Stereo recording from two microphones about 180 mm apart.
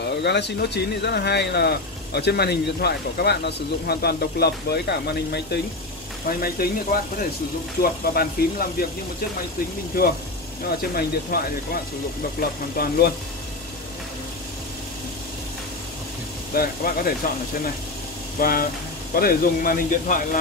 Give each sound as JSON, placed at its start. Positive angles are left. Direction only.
{"t": 0.0, "sound": "speech", "side_deg": 70}
{"t": 10.8, "sound": "speech", "side_deg": 55}
{"t": 16.5, "sound": "speech", "side_deg": 55}
{"t": 18.4, "sound": "a man's voice", "side_deg": 55}